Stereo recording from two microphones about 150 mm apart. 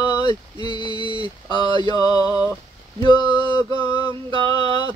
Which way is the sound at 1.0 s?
35° right (ahead or behind).